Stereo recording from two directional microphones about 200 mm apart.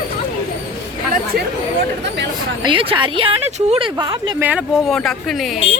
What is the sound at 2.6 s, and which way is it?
Speech, 25° right (ahead or behind).